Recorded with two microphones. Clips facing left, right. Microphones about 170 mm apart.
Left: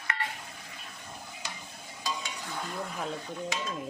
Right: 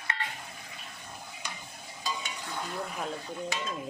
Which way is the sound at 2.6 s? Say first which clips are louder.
Even; centre (ahead or behind).